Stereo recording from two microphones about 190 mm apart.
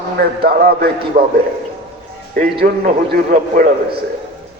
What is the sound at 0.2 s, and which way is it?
A man's voice, 55° right (ahead or behind).